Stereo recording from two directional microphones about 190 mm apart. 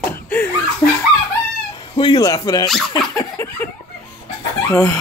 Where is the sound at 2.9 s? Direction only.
20° left (ahead or behind).